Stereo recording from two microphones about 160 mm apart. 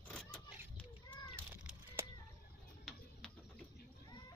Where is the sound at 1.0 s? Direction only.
30° left (ahead or behind).